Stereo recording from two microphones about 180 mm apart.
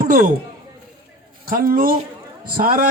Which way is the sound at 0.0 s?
50° right (ahead or behind).